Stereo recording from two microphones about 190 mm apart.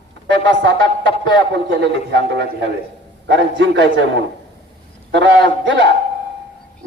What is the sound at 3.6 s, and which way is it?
Speech, 80° right.